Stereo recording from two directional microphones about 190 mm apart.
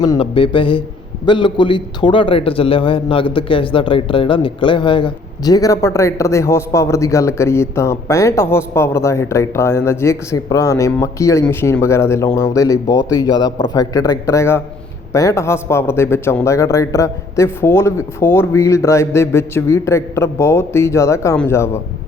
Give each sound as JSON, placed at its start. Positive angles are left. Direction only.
{"t": 0.2, "sound": "a man's voice", "side_deg": 25}